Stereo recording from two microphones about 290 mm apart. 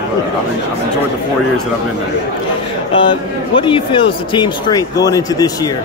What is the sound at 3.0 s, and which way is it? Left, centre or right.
Speech, centre.